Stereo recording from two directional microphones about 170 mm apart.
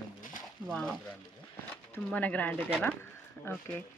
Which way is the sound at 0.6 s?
5° left (ahead or behind).